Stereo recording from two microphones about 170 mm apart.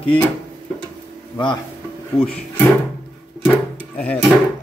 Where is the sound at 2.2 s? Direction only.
10° left (ahead or behind).